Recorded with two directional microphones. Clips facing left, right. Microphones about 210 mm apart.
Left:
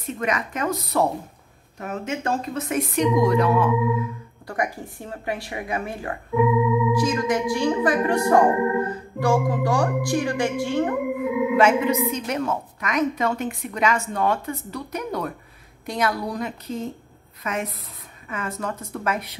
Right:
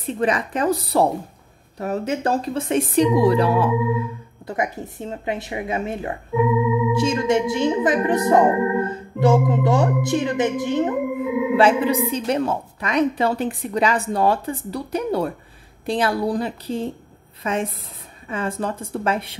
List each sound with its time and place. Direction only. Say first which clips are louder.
0.0 s a woman's voice: right 4 dB; 30° right (ahead or behind)
4.5 s speech: right 2 dB; 20° right (ahead or behind)
11.5 s a woman's voice: right 2 dB; 30° right (ahead or behind)